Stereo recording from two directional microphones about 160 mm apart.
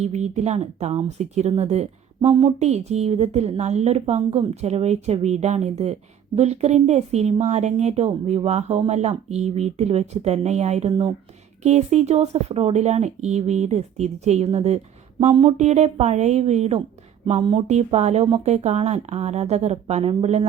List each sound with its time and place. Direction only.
0.0 s speech: 45° right (ahead or behind)